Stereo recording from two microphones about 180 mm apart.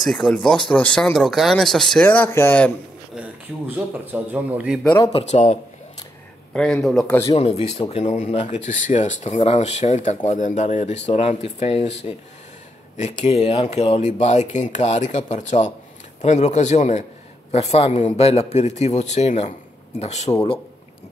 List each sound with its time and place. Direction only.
0.0 s speech: 5° left (ahead or behind)
3.2 s speech: 10° right (ahead or behind)
5.1 s speech: 40° left (ahead or behind)
6.5 s speech: 5° left (ahead or behind)
7.3 s speech: 35° left (ahead or behind)
12.9 s speech: 40° left (ahead or behind)